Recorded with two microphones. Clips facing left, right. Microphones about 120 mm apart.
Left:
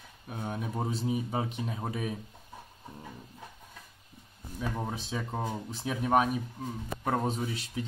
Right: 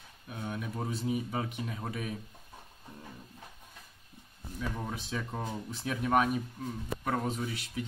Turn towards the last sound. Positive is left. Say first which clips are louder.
# left 2 dB
turn(degrees=30)  # may be behind; listen again after turning